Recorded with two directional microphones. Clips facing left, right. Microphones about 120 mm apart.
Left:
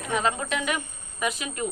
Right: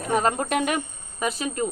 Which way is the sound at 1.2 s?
35° right (ahead or behind).